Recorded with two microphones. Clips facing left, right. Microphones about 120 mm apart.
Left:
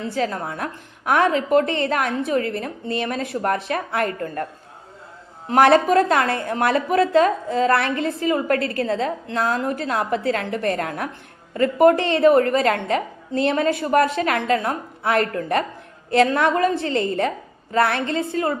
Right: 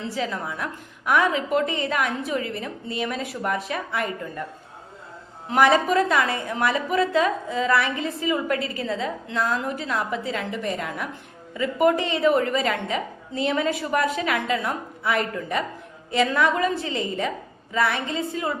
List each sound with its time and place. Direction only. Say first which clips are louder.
0.0 s a woman's voice: left 4 dB; 45° left (ahead or behind)
5.5 s a woman's voice: left 4 dB; 60° left (ahead or behind)
11.9 s a woman's voice: left 5 dB; 65° left (ahead or behind)